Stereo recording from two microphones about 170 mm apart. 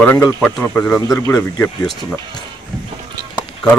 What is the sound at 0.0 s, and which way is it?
Speech, 10° left (ahead or behind).